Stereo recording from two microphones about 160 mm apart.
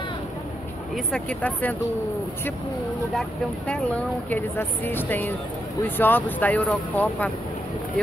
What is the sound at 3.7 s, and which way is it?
Speech, 10° left (ahead or behind).